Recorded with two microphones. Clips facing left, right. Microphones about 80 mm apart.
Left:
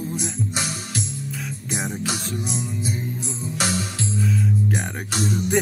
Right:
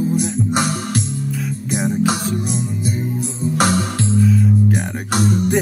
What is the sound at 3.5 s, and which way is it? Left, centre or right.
Music, right.